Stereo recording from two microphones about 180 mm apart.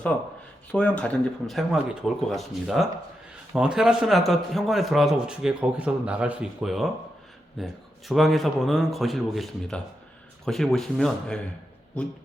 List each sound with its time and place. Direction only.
0.7 s a man's voice: 5° left (ahead or behind)